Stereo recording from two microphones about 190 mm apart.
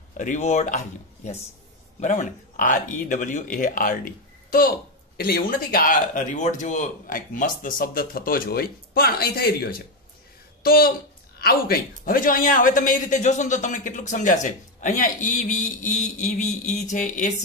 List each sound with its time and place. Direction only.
0.2 s speech: 40° left (ahead or behind)